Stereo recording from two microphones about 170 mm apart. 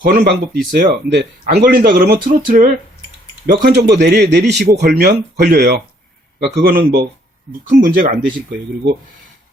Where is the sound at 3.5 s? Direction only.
70° right (ahead or behind).